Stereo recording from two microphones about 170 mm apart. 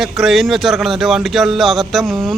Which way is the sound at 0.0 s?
Centre (ahead or behind).